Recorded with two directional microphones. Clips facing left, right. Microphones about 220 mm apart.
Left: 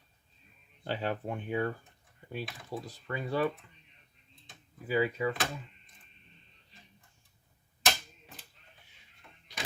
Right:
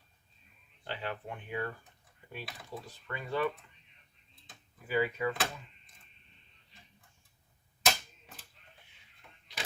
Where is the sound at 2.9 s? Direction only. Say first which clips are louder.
Left 2 dB; 35° left (ahead or behind).